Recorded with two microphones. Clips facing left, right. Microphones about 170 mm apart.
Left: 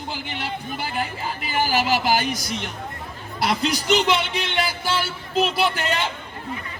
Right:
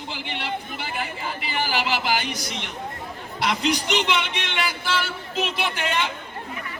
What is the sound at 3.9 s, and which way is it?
Speech, 35° left (ahead or behind).